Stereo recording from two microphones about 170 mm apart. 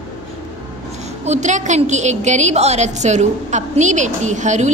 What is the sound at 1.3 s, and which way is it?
A woman's voice, 45° right (ahead or behind).